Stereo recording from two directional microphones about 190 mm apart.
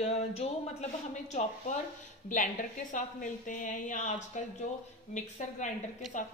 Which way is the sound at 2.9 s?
45° left (ahead or behind).